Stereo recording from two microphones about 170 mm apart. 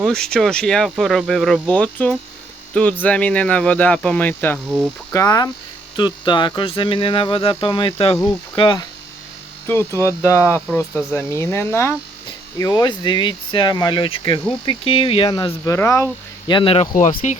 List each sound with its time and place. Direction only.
0.0 s speech: 5° left (ahead or behind)
5.1 s speech: 20° left (ahead or behind)
6.0 s a sound: 25° left (ahead or behind)
8.5 s speech: 25° left (ahead or behind)
9.6 s speech: 15° left (ahead or behind)
16.5 s a sound: 30° left (ahead or behind)
16.9 s speech: 50° left (ahead or behind)